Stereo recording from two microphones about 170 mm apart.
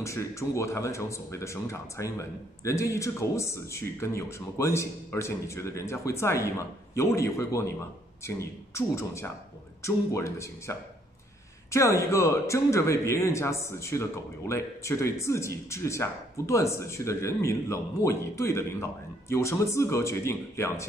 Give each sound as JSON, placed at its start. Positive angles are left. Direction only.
{"t": 0.0, "sound": "speech", "side_deg": 15}